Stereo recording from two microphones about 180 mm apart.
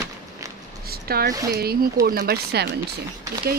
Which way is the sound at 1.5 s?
60° right (ahead or behind).